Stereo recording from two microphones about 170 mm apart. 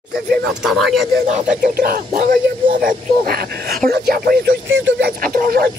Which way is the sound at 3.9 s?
70° right (ahead or behind).